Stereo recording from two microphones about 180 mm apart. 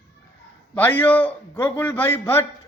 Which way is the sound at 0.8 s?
10° left (ahead or behind).